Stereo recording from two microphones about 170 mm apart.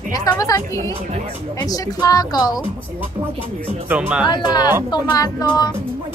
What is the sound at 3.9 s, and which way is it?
Speech, 10° right (ahead or behind).